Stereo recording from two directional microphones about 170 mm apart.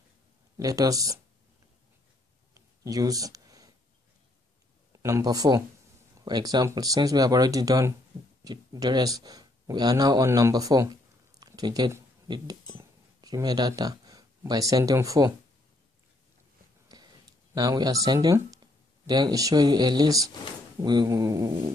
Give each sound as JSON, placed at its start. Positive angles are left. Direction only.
{"t": 0.6, "sound": "speech", "side_deg": -20}
{"t": 2.5, "sound": "a sound", "side_deg": -20}
{"t": 5.0, "sound": "speech", "side_deg": -20}
{"t": 17.6, "sound": "speech", "side_deg": -20}